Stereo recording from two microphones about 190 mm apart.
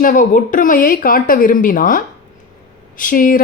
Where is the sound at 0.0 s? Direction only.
45° left (ahead or behind).